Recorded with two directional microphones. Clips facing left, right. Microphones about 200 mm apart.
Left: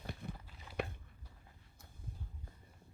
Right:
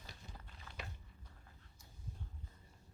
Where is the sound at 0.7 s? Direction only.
15° left (ahead or behind).